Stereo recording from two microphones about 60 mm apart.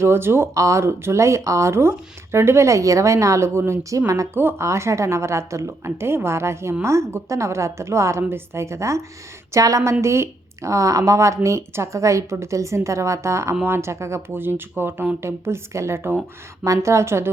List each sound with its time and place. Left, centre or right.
0.0 s a woman's voice: right
0.5 s speech: right
3.7 s speech: right
4.4 s speech: right
4.6 s a woman's voice: right
9.5 s speech: right
10.0 s a woman's voice: right
14.3 s a woman's voice: right